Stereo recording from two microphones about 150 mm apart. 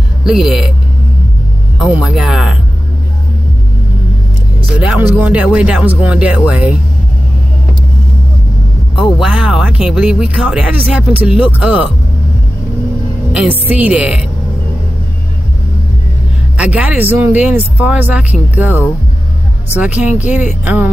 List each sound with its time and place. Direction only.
0.2 s speech: centre (ahead or behind)
1.8 s speech: 5° right (ahead or behind)
4.7 s speech: 5° right (ahead or behind)
8.9 s speech: 5° right (ahead or behind)
13.3 s speech: 10° right (ahead or behind)
16.5 s speech: 10° right (ahead or behind)